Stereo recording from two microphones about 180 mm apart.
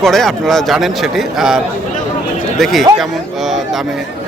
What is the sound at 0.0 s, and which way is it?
A man's voice, centre (ahead or behind).